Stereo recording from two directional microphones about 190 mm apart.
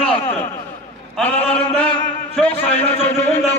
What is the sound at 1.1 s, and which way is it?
Speech, 5° left (ahead or behind).